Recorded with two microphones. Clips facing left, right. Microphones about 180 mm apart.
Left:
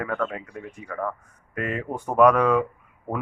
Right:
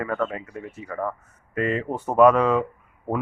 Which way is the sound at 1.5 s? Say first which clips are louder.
Right 4 dB; 10° left (ahead or behind).